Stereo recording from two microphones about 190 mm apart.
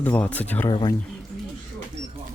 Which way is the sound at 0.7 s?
25° left (ahead or behind).